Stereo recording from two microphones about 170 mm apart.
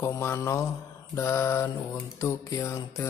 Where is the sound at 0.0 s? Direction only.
15° left (ahead or behind).